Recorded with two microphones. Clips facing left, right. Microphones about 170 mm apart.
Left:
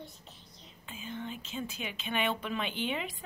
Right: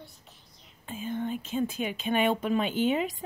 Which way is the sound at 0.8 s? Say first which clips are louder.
Right 8 dB; 50° right (ahead or behind).